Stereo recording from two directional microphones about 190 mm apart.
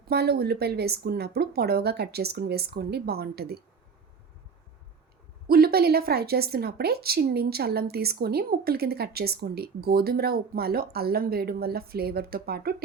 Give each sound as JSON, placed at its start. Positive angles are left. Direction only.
{"t": 0.1, "sound": "a woman's voice", "side_deg": -55}
{"t": 5.5, "sound": "a woman's voice", "side_deg": -55}